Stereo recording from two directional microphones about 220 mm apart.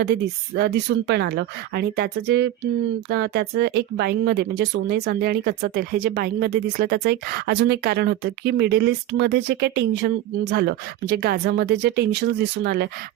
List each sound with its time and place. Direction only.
0.0 s speech: 45° right (ahead or behind)